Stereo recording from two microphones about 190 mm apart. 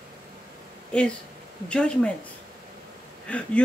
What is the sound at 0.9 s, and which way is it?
Speech, 5° left (ahead or behind).